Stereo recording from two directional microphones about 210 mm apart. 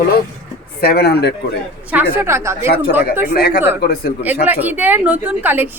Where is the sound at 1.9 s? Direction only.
10° right (ahead or behind).